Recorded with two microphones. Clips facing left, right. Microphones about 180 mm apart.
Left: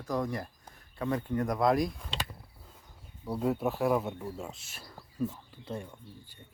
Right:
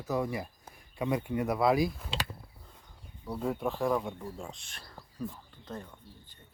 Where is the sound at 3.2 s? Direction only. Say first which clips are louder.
Left 3 dB; 5° left (ahead or behind).